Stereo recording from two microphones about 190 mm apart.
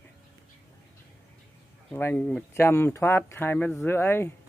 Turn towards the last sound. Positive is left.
turn(degrees=10)  # may be behind; listen again after turning